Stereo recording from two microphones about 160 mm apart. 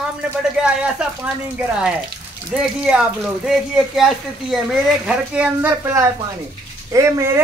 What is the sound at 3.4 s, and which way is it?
Speech, centre (ahead or behind).